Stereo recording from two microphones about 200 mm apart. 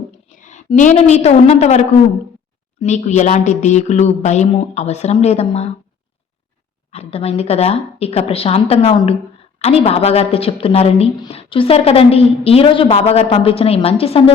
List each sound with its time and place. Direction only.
0.3 s a woman's voice: 40° left (ahead or behind)
2.8 s speech: 35° left (ahead or behind)
6.9 s speech: 30° left (ahead or behind)